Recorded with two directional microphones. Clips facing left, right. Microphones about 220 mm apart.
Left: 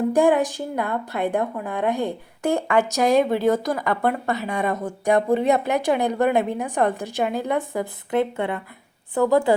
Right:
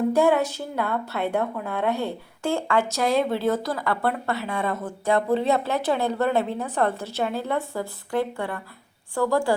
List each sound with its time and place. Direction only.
0.1 s a woman's voice: 15° left (ahead or behind)